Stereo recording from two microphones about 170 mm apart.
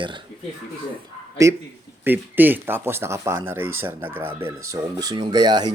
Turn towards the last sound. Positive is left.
turn(degrees=-25)  # may be behind; listen again after turning